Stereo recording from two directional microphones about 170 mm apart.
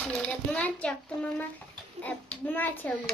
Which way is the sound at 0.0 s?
5° left (ahead or behind).